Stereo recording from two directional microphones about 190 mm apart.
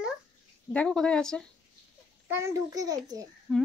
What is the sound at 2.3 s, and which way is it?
A child's voice, 15° right (ahead or behind).